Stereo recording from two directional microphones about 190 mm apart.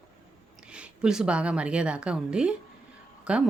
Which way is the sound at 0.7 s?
5° right (ahead or behind).